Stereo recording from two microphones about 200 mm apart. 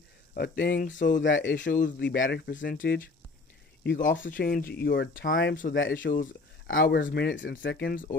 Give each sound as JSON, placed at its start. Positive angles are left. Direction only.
{"t": 0.4, "sound": "speech", "side_deg": 55}
{"t": 0.9, "sound": "speech", "side_deg": 40}
{"t": 1.2, "sound": "speech", "side_deg": 70}
{"t": 3.8, "sound": "speech", "side_deg": 65}
{"t": 4.2, "sound": "speech", "side_deg": 45}
{"t": 6.7, "sound": "speech", "side_deg": 50}